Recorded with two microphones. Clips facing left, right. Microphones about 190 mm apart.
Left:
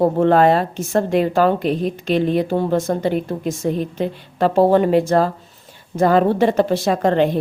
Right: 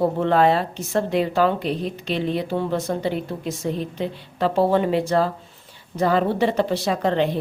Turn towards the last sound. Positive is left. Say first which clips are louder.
# left 5 dB
turn(degrees=50)  # may be behind; listen again after turning